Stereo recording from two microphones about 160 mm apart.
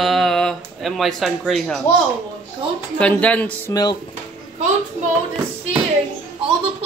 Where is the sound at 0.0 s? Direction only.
Centre (ahead or behind).